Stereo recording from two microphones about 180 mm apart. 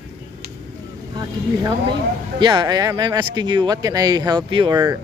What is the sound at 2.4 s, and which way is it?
Speech, 25° right (ahead or behind).